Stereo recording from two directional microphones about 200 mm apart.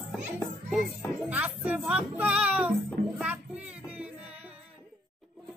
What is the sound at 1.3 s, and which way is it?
Speech, 5° right (ahead or behind).